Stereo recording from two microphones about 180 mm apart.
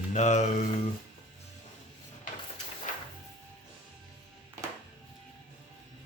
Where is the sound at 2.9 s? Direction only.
45° left (ahead or behind).